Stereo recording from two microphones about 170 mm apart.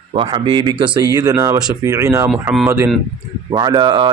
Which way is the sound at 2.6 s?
15° right (ahead or behind).